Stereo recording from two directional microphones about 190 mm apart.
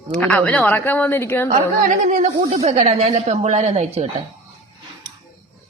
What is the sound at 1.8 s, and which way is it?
A woman's voice, 40° right (ahead or behind).